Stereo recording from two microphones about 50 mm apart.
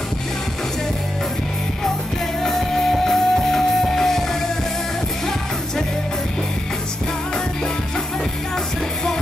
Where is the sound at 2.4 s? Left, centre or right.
Centre.